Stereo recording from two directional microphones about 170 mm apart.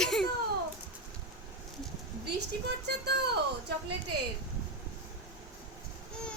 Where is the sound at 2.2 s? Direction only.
75° right (ahead or behind).